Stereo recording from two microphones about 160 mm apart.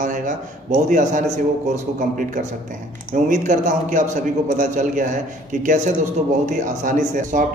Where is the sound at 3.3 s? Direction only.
50° right (ahead or behind).